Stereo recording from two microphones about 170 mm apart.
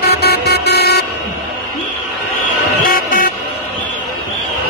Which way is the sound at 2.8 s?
55° left (ahead or behind).